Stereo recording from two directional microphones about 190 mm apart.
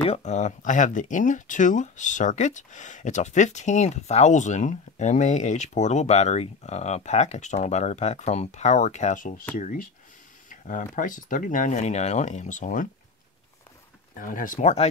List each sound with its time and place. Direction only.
0.0 s speech: 35° left (ahead or behind)
14.1 s speech: 45° left (ahead or behind)